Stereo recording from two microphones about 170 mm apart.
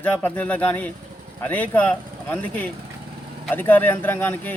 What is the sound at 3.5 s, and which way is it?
A man's voice, 10° left (ahead or behind).